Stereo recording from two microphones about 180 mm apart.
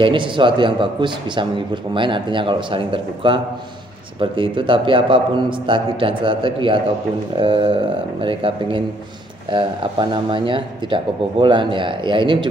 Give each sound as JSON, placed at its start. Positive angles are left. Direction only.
{"t": 0.0, "sound": "speech", "side_deg": -25}